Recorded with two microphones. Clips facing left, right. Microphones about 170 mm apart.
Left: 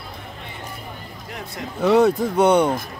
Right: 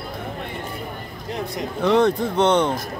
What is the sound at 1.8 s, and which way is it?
Speech, 10° left (ahead or behind).